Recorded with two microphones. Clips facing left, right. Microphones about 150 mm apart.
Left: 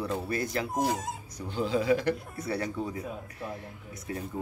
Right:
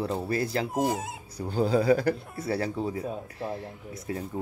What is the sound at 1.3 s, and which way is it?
A man's voice, 40° right (ahead or behind).